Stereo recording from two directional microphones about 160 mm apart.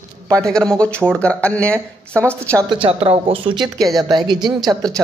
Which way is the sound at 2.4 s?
15° right (ahead or behind).